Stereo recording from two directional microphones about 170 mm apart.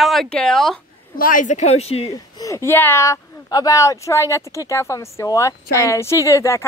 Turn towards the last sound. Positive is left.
turn(degrees=15)  # may be behind; listen again after turning